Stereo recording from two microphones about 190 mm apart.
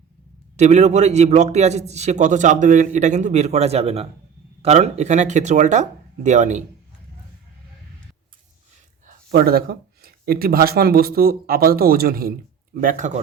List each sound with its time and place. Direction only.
0.5 s a man's voice: 35° right (ahead or behind)
9.3 s speech: 55° right (ahead or behind)